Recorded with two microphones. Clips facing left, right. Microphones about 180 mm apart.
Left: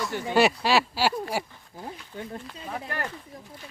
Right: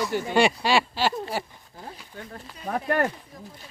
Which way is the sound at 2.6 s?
55° right (ahead or behind).